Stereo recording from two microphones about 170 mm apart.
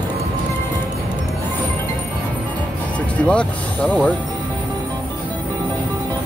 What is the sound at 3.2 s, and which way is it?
Speech, 5° left (ahead or behind).